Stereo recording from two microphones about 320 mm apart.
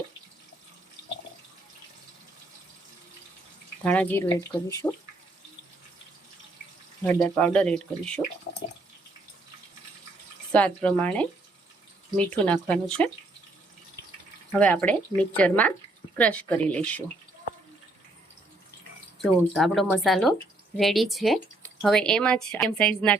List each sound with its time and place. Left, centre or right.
3.8 s speech: centre
7.0 s a woman's voice: centre
10.5 s a woman's voice: centre
14.6 s a woman's voice: centre
19.2 s a woman's voice: centre